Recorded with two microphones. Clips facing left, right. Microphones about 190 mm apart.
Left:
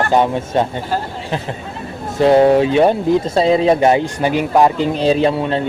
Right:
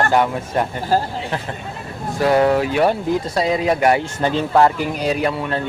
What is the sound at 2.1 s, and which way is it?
Speech, 25° left (ahead or behind).